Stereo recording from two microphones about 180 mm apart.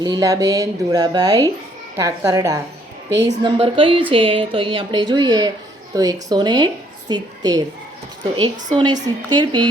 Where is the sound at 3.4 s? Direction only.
30° right (ahead or behind).